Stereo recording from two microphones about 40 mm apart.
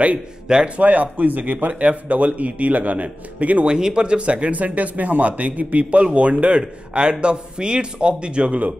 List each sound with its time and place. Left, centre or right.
0.7 s a man's voice: right
3.6 s speech: centre
4.6 s a man's voice: right